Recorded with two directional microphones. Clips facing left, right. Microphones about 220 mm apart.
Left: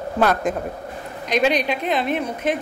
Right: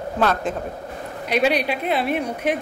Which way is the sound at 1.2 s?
10° right (ahead or behind).